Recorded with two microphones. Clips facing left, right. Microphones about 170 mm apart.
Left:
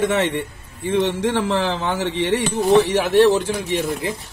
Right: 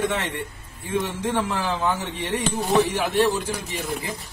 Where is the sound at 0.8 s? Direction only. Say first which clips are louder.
Left 6 dB; 85° left.